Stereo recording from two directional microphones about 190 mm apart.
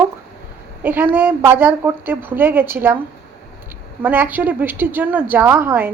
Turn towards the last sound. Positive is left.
turn(degrees=-10)  # may be behind; listen again after turning